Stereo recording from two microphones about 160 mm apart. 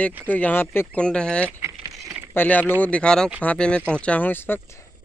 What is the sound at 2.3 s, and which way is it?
Speech, 10° left (ahead or behind).